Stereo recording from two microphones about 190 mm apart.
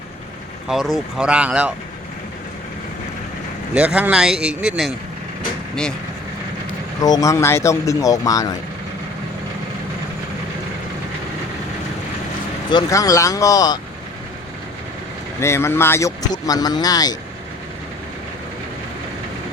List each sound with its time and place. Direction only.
0.7 s speech: centre (ahead or behind)
3.8 s speech: 5° right (ahead or behind)
7.0 s speech: 20° left (ahead or behind)
12.7 s speech: 15° left (ahead or behind)
15.4 s speech: 15° left (ahead or behind)